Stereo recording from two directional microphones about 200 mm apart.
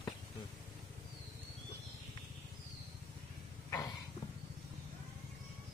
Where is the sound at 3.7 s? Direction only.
20° left (ahead or behind).